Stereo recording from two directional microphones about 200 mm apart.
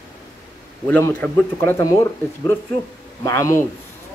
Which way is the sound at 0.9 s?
10° left (ahead or behind).